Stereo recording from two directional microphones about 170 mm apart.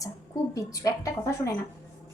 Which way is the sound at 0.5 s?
20° left (ahead or behind).